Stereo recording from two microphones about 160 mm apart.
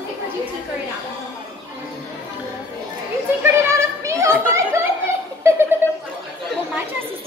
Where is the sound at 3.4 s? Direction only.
20° right (ahead or behind).